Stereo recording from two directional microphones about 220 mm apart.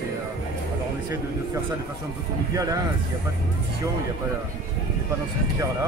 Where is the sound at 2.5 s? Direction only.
15° right (ahead or behind).